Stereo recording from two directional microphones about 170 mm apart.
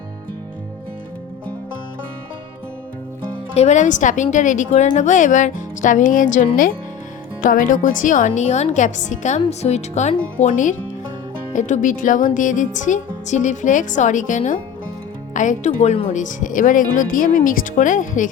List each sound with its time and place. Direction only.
3.5 s a woman's voice: 40° left (ahead or behind)